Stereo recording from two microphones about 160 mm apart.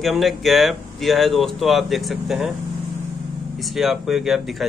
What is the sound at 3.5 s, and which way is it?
A man's voice, centre (ahead or behind).